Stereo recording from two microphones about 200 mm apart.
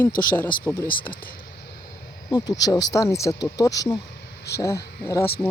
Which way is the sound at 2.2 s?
20° left (ahead or behind).